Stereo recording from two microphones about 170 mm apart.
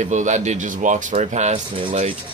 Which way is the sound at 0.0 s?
45° right (ahead or behind).